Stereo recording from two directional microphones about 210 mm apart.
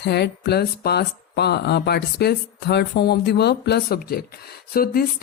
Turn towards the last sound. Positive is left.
turn(degrees=45)  # may be behind; listen again after turning